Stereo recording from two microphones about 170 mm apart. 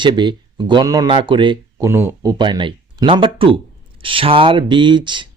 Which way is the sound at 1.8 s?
15° right (ahead or behind).